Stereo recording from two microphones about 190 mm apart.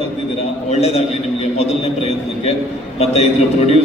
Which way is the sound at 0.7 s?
35° left (ahead or behind).